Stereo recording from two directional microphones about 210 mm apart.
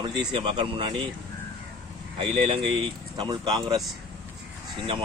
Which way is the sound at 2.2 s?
25° right (ahead or behind).